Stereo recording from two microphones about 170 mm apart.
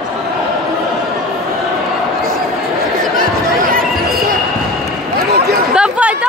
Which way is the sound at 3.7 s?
60° right (ahead or behind).